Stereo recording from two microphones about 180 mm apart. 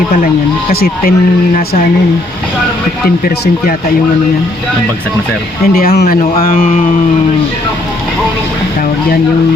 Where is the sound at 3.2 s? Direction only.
55° left (ahead or behind).